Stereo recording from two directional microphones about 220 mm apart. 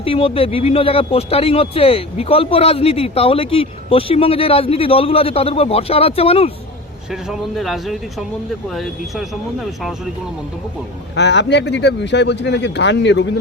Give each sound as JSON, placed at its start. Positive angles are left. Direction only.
{"t": 0.0, "sound": "speech", "side_deg": 25}
{"t": 7.1, "sound": "speech", "side_deg": 0}
{"t": 11.1, "sound": "speech", "side_deg": 50}